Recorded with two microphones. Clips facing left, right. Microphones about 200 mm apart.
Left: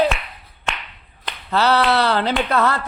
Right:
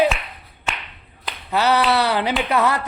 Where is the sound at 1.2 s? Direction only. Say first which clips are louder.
Left 1 dB; 10° right (ahead or behind).